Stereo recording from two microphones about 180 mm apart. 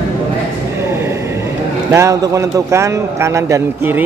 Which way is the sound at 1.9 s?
15° right (ahead or behind).